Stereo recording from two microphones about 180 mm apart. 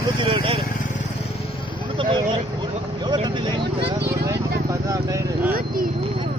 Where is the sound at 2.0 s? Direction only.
30° right (ahead or behind).